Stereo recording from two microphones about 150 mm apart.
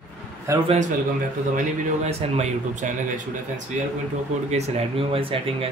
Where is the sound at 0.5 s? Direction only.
20° right (ahead or behind).